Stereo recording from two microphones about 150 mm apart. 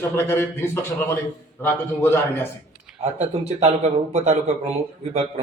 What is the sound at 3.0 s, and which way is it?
Speech, 45° right (ahead or behind).